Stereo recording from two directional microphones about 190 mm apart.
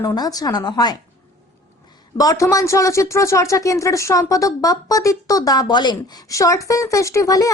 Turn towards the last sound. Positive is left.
turn(degrees=20)  # may be behind; listen again after turning